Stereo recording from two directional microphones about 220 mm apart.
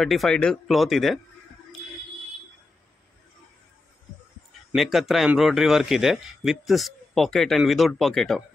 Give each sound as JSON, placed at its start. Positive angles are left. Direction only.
{"t": 0.0, "sound": "speech", "side_deg": 0}
{"t": 4.7, "sound": "speech", "side_deg": 0}